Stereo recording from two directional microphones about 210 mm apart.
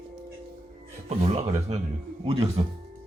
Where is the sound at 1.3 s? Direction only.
30° right (ahead or behind).